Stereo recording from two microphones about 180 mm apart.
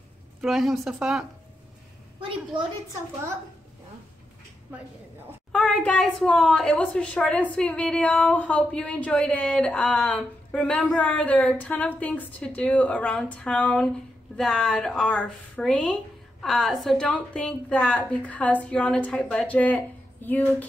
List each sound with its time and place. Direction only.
0.4 s a woman's voice: centre (ahead or behind)
2.1 s a woman's voice: 30° right (ahead or behind)
5.5 s a woman's voice: 5° left (ahead or behind)